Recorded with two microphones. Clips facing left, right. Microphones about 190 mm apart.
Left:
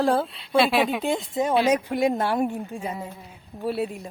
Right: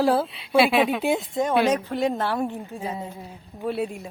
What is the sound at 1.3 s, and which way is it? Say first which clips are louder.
A woman's voice: left 2 dB; 10° left (ahead or behind).